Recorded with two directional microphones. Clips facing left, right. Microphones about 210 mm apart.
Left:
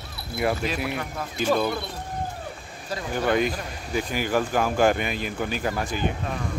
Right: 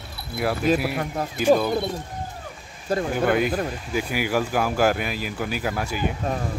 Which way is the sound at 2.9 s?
50° right (ahead or behind).